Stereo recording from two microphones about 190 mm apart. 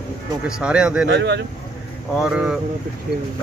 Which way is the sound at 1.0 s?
65° right (ahead or behind).